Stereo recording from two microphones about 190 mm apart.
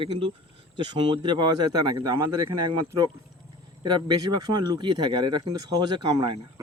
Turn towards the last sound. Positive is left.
turn(degrees=-25)  # may be behind; listen again after turning